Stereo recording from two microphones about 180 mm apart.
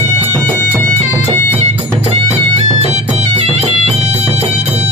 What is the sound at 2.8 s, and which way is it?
Music, 35° right (ahead or behind).